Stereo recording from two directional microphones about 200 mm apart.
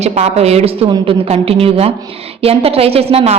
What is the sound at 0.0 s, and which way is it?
A woman's voice, 35° right (ahead or behind).